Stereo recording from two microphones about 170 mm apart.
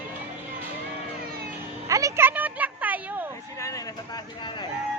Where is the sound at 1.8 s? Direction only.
20° right (ahead or behind).